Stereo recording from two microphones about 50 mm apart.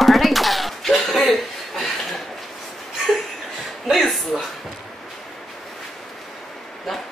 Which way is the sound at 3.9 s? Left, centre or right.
Centre.